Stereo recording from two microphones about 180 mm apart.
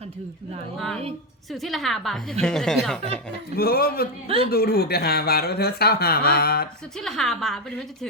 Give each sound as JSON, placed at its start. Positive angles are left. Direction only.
{"t": 1.6, "sound": "a woman's voice", "side_deg": 0}
{"t": 3.5, "sound": "speech", "side_deg": 55}
{"t": 7.0, "sound": "a woman's voice", "side_deg": 0}